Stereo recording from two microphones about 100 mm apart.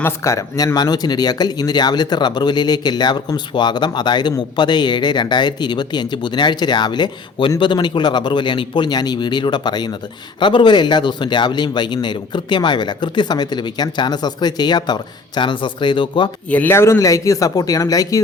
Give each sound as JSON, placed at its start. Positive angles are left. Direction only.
{"t": 0.0, "sound": "speech", "side_deg": 30}
{"t": 16.5, "sound": "speech", "side_deg": 15}
{"t": 16.7, "sound": "speech", "side_deg": 30}